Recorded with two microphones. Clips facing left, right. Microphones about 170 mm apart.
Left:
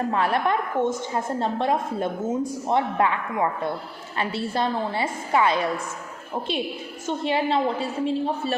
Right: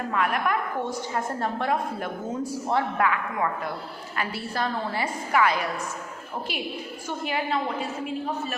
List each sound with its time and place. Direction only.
0.1 s a woman's voice: 30° left (ahead or behind)